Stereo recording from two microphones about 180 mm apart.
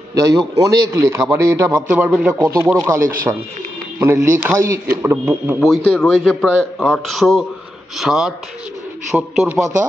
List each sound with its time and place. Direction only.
0.1 s a man's voice: 20° right (ahead or behind)
1.9 s a man's voice: 5° right (ahead or behind)
5.6 s speech: centre (ahead or behind)